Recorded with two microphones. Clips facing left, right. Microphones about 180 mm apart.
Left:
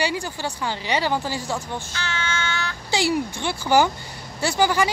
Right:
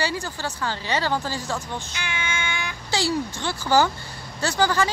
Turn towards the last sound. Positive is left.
turn(degrees=15)  # may be behind; listen again after turning